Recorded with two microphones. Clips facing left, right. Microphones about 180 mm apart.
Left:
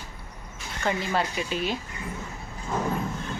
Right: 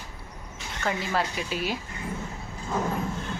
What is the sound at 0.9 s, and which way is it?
Speech, centre (ahead or behind).